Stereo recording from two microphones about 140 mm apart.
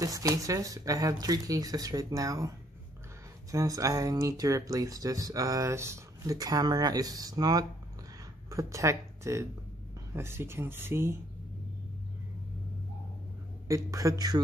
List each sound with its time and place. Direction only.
0.0 s speech: 25° right (ahead or behind)
3.5 s speech: 25° right (ahead or behind)
13.7 s speech: 25° right (ahead or behind)